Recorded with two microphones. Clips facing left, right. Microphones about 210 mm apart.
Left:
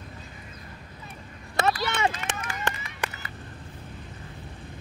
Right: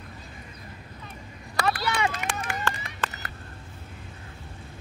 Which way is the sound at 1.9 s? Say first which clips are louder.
Even; 25° left (ahead or behind).